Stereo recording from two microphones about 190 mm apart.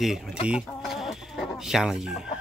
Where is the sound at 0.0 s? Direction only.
5° right (ahead or behind).